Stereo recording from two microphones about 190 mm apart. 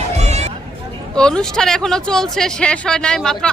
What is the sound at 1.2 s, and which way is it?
Speech, 5° left (ahead or behind).